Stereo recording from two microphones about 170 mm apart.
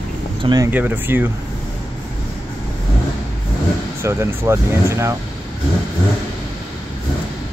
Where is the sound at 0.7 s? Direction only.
10° right (ahead or behind).